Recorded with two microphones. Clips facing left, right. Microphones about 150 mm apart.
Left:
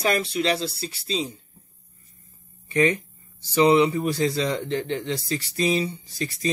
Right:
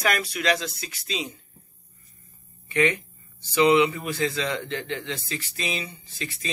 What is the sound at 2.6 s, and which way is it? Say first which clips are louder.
Speech: left 2 dB; 35° left (ahead or behind).